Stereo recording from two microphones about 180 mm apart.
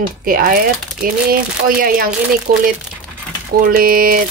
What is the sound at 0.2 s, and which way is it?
Speech, 55° right (ahead or behind).